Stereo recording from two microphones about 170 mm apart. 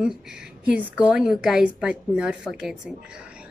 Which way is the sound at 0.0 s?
5° right (ahead or behind).